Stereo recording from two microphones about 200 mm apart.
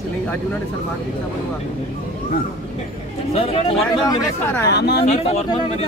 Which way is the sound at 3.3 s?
30° left (ahead or behind).